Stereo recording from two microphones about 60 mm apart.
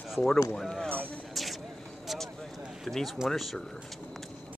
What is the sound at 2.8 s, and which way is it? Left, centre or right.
Speech, centre.